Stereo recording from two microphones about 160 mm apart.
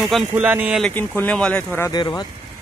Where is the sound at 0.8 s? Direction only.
10° left (ahead or behind).